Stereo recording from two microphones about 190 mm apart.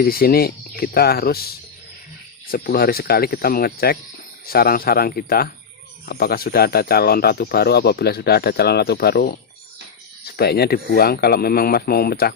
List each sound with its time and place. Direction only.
0.0 s speech: 50° left (ahead or behind)